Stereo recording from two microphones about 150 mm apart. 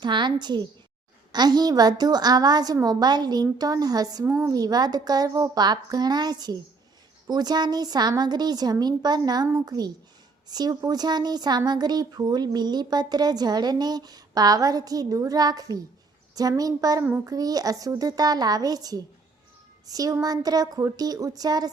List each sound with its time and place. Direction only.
0.0 s speech: 30° right (ahead or behind)